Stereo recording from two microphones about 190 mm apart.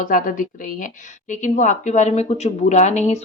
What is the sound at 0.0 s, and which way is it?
A woman's voice, 45° left (ahead or behind).